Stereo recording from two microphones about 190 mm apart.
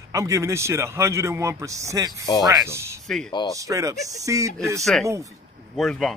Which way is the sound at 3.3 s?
20° left (ahead or behind).